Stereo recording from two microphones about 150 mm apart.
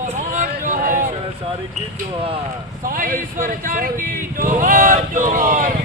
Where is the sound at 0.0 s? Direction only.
60° right (ahead or behind).